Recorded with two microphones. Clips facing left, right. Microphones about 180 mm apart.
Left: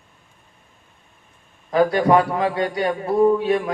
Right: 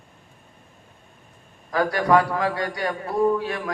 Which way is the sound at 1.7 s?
25° left (ahead or behind).